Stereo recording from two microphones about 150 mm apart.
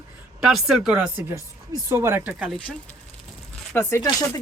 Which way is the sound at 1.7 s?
20° right (ahead or behind).